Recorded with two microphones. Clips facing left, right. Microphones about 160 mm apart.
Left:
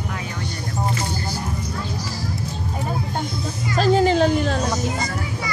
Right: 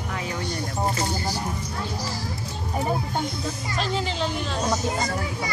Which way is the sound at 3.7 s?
45° left (ahead or behind).